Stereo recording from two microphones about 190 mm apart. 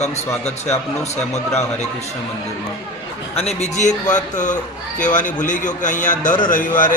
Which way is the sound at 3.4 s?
35° left (ahead or behind).